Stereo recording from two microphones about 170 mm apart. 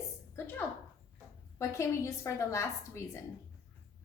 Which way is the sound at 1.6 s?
20° left (ahead or behind).